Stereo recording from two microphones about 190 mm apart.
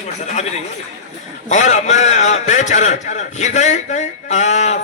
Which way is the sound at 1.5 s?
40° left (ahead or behind).